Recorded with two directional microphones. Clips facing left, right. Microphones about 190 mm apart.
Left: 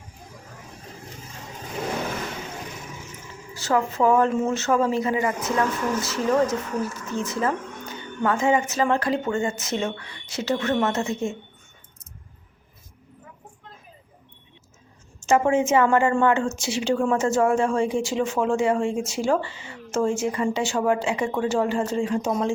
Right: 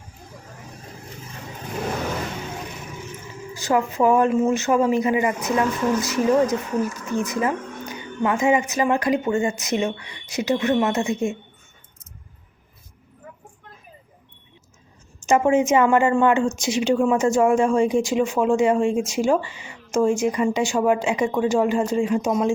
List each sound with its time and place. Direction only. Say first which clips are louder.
3.5 s speech: right 2 dB; 15° right (ahead or behind)
15.2 s speech: right 2 dB; 20° right (ahead or behind)